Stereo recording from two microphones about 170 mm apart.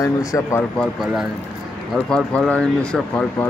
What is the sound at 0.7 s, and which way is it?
Speech, centre (ahead or behind).